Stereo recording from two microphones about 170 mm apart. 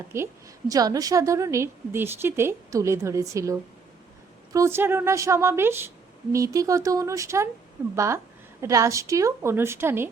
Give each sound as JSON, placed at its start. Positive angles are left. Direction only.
{"t": 0.1, "sound": "a woman's voice", "side_deg": -15}